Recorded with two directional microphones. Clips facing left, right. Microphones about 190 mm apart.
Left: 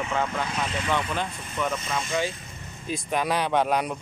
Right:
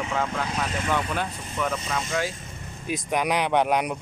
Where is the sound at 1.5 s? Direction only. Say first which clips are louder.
Even; 5° left (ahead or behind).